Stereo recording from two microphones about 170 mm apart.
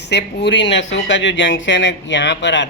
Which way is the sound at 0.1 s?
90° left.